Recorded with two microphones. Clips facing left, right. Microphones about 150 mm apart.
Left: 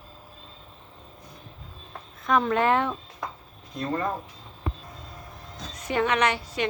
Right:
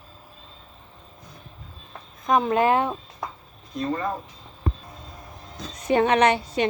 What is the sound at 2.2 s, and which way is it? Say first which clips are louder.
Speech: right 2 dB; 15° right (ahead or behind).